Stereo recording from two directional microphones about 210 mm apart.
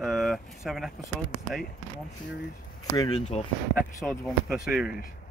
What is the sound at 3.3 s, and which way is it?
Speech, 30° left (ahead or behind).